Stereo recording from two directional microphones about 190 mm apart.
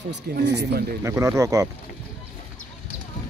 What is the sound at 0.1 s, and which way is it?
Speech, 65° right (ahead or behind).